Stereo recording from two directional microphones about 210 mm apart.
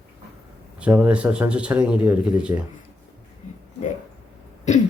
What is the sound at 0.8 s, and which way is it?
Speech, 5° right (ahead or behind).